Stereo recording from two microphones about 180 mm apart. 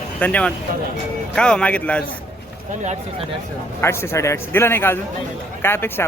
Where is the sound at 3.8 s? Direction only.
15° left (ahead or behind).